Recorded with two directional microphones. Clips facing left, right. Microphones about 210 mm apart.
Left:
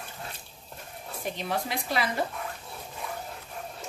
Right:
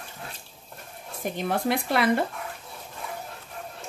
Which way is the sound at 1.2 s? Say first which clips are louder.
Right 6 dB; 50° right (ahead or behind).